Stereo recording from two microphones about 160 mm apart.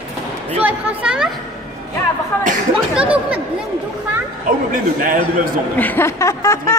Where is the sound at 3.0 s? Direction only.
5° right (ahead or behind).